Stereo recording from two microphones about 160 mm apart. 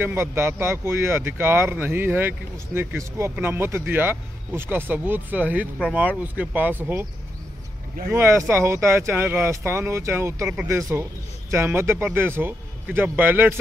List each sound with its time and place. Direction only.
0.0 s speech: 15° right (ahead or behind)
8.1 s speech: 15° right (ahead or behind)